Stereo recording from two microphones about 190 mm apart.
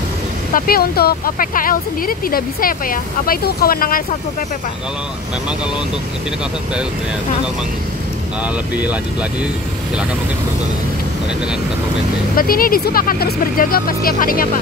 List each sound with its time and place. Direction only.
0.5 s speech: 50° left (ahead or behind)
12.4 s speech: 50° left (ahead or behind)